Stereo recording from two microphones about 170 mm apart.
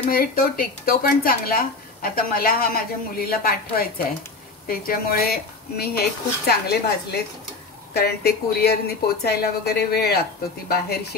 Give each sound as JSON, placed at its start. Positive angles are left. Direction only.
{"t": 0.1, "sound": "a woman's voice", "side_deg": 60}